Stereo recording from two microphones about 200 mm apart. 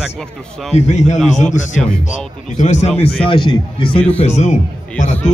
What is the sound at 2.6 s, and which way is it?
A man's voice, 35° left (ahead or behind).